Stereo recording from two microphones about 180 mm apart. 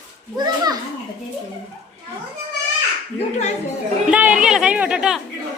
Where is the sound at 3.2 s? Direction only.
40° left (ahead or behind).